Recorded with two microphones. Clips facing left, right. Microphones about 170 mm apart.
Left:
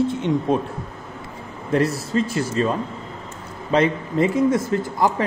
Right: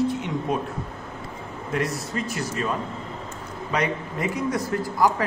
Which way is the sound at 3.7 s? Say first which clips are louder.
Left 7 dB; 25° left (ahead or behind).